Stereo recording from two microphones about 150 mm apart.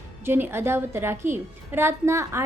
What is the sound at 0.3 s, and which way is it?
A woman's voice, 15° right (ahead or behind).